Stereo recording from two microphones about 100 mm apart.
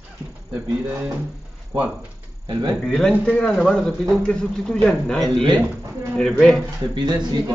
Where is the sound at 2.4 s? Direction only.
50° right (ahead or behind).